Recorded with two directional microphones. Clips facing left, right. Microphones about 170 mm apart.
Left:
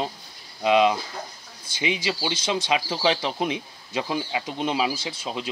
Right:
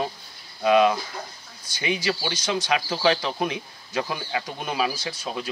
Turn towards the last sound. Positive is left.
turn(degrees=25)  # may be behind; listen again after turning